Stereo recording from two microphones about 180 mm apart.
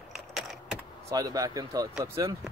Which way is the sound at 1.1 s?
20° right (ahead or behind).